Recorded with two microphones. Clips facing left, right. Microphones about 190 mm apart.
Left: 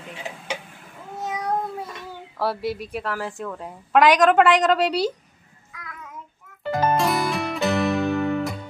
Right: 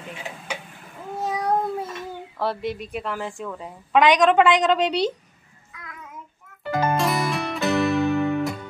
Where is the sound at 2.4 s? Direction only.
5° left (ahead or behind).